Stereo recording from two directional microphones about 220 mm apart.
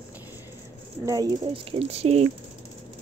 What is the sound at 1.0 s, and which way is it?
Speech, 15° right (ahead or behind).